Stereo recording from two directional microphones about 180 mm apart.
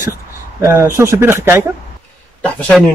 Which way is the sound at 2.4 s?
5° left (ahead or behind).